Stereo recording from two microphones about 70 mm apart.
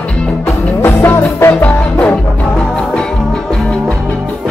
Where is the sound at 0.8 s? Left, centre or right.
Left.